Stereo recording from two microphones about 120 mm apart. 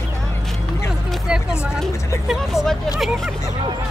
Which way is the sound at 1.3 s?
5° right (ahead or behind).